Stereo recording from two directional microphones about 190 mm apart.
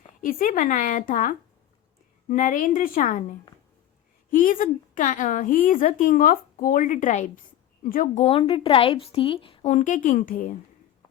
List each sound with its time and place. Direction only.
0.2 s a woman's voice: 45° left (ahead or behind); by 9.7 s 25° left (ahead or behind)
9.7 s a woman's voice: 40° left (ahead or behind)